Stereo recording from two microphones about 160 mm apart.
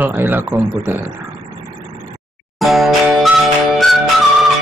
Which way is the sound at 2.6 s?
Centre (ahead or behind).